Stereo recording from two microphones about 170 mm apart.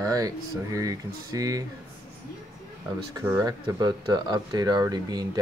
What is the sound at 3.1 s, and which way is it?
Speech, 10° right (ahead or behind).